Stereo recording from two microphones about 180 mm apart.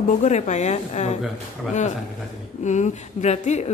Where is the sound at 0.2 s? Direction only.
40° left (ahead or behind).